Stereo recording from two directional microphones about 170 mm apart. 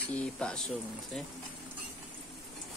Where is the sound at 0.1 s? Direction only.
5° left (ahead or behind).